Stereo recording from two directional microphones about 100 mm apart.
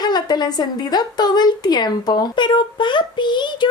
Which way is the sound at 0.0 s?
45° left (ahead or behind).